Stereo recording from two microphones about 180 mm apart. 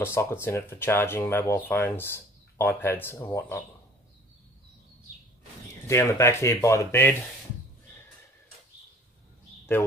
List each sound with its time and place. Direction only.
0.0 s speech: 15° left (ahead or behind)
5.9 s speech: 15° left (ahead or behind)